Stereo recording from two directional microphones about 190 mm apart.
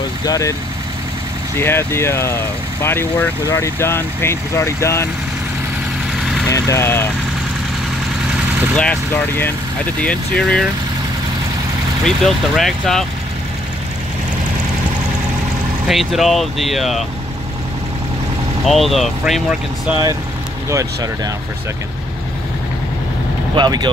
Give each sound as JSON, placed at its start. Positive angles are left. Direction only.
{"t": 0.2, "sound": "speech", "side_deg": 20}
{"t": 1.6, "sound": "speech", "side_deg": 15}
{"t": 6.5, "sound": "speech", "side_deg": 15}
{"t": 10.0, "sound": "speech", "side_deg": 5}
{"t": 12.0, "sound": "speech", "side_deg": 0}
{"t": 15.9, "sound": "speech", "side_deg": 0}
{"t": 18.7, "sound": "speech", "side_deg": 0}
{"t": 20.7, "sound": "speech", "side_deg": -20}
{"t": 23.5, "sound": "speech", "side_deg": -25}